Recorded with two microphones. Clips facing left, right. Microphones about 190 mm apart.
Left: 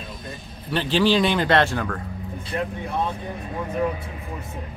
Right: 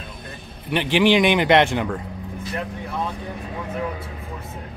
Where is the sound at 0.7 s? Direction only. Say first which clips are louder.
Right 2 dB; 15° right (ahead or behind).